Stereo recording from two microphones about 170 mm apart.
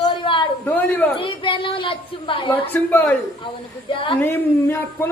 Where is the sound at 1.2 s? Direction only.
30° left (ahead or behind).